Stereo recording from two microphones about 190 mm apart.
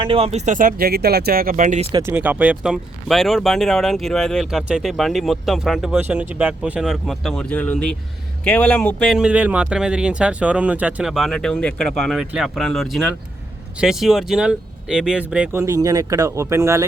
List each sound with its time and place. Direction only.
0.0 s speech: 30° right (ahead or behind)
1.9 s speech: 15° right (ahead or behind)